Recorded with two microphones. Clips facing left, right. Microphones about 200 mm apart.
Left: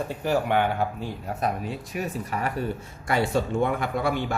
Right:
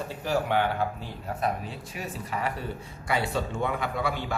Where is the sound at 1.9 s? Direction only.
50° left (ahead or behind).